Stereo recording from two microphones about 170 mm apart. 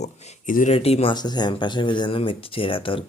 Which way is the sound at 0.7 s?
35° left (ahead or behind).